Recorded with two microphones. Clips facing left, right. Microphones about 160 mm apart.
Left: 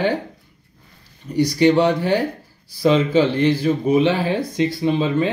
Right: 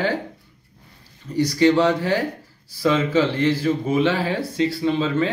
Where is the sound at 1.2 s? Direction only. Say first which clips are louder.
Left 2 dB; 15° left (ahead or behind).